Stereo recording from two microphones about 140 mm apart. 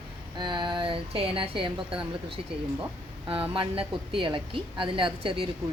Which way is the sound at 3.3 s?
40° right (ahead or behind).